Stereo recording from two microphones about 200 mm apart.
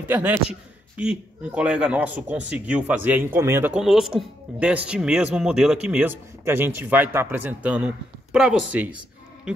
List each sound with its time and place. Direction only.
0.1 s a man's voice: 10° right (ahead or behind)